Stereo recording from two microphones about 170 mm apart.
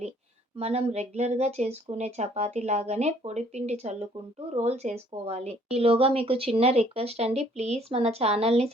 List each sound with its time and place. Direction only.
0.5 s a woman's voice: 35° right (ahead or behind)